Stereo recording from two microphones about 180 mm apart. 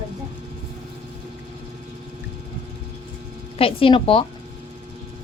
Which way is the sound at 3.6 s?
30° left (ahead or behind).